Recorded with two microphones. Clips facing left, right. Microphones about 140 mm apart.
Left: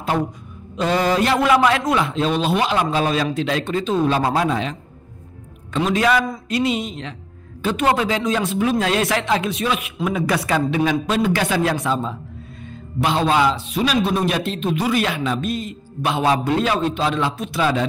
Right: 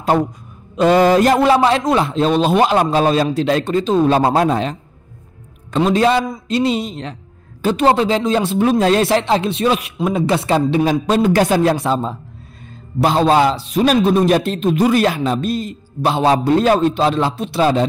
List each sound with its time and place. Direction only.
0.7 s a man's voice: 50° right (ahead or behind); by 17.8 s 35° right (ahead or behind)